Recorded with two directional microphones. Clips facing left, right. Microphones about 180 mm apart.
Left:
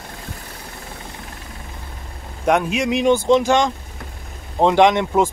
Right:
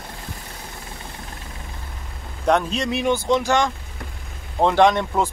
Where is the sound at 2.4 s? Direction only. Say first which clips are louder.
Left 2 dB; 10° left (ahead or behind).